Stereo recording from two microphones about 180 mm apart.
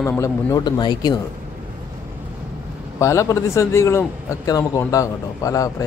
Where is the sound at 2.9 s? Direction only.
15° left (ahead or behind).